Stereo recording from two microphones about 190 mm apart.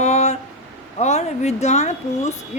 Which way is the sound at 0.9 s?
35° left (ahead or behind).